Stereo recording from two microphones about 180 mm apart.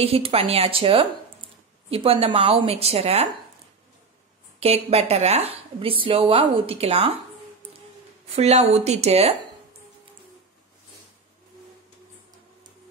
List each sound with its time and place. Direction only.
0.0 s speech: 35° right (ahead or behind)
4.6 s speech: 35° right (ahead or behind)
8.3 s speech: 35° right (ahead or behind)